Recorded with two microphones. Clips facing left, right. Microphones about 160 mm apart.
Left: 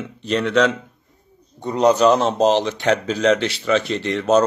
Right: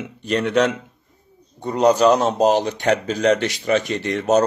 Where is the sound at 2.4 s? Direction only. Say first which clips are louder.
Even; 45° right (ahead or behind).